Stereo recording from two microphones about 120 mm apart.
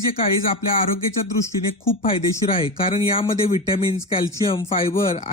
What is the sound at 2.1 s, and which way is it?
Speech, 45° left (ahead or behind).